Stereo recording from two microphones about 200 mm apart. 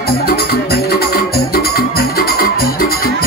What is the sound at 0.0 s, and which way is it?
Music, 50° left (ahead or behind).